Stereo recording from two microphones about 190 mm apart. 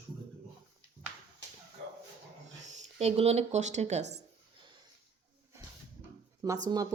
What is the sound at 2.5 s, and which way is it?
Speech, 40° right (ahead or behind).